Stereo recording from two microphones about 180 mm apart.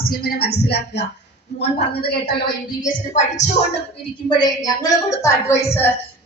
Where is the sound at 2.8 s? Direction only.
45° left (ahead or behind).